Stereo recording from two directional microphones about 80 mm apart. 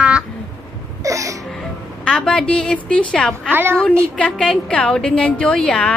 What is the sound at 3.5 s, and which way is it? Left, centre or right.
Child singing, right.